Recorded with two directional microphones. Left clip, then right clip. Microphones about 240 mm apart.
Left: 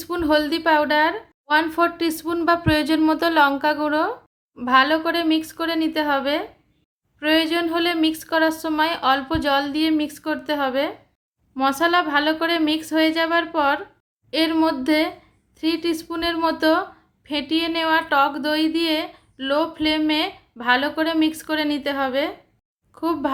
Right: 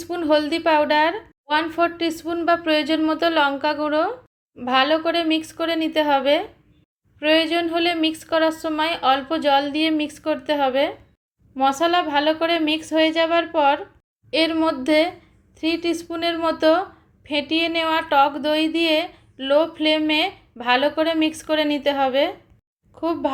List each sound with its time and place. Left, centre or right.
0.0 s a woman's voice: centre
23.0 s a woman's voice: centre